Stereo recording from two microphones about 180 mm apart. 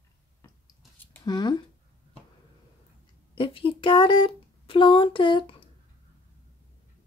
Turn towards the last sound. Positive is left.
turn(degrees=30)  # may be behind; listen again after turning